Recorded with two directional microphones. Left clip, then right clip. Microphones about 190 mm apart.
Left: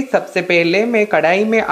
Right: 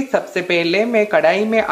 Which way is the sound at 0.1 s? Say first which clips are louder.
Left 3 dB; 10° left (ahead or behind).